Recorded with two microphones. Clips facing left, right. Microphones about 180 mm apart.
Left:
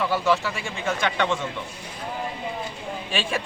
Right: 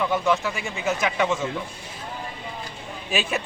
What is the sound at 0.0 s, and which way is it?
Speech, centre (ahead or behind).